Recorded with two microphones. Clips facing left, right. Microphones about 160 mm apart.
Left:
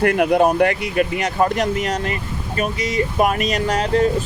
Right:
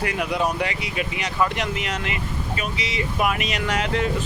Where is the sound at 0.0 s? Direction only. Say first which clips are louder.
Left 9 dB; 55° left (ahead or behind).